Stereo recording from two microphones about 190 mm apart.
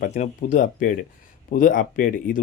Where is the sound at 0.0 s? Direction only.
40° left (ahead or behind).